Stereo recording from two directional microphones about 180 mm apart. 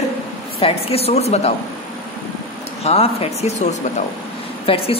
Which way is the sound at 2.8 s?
35° left (ahead or behind).